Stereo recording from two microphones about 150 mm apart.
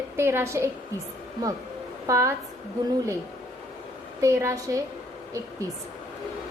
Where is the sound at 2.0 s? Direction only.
20° right (ahead or behind).